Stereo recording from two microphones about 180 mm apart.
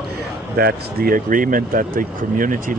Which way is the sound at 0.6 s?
60° right (ahead or behind).